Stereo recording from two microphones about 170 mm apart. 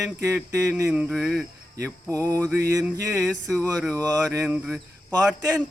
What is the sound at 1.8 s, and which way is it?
Speech, 15° right (ahead or behind).